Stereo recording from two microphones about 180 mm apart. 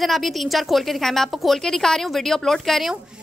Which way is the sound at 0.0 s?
Centre (ahead or behind).